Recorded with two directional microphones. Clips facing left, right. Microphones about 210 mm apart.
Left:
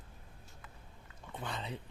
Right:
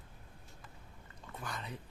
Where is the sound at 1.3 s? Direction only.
25° left (ahead or behind).